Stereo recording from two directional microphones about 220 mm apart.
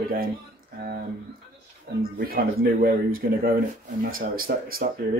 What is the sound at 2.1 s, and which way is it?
Speech, 45° right (ahead or behind).